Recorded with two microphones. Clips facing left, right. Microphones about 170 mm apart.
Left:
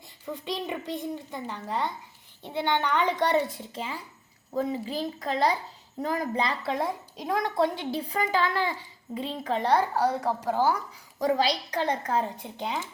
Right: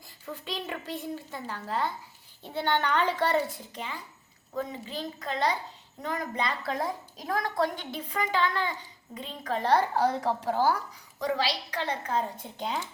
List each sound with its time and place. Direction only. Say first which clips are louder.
0.3 s a child's voice: left 4 dB; 20° left (ahead or behind)
9.6 s a woman's voice: even; 10° left (ahead or behind)
11.9 s a woman's voice: left 1 dB; 10° left (ahead or behind)